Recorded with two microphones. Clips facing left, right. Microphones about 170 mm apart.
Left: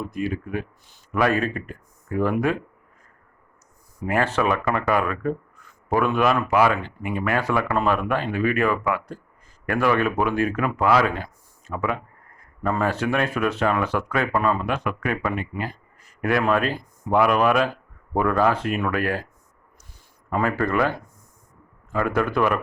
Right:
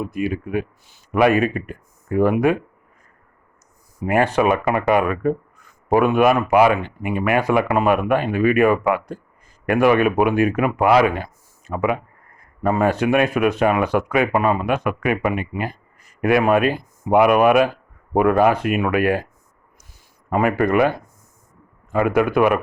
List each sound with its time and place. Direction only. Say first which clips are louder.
0.0 s speech: right 4 dB; 10° right (ahead or behind)
4.0 s speech: right 5 dB; 15° right (ahead or behind)
20.3 s speech: right 5 dB; 15° right (ahead or behind)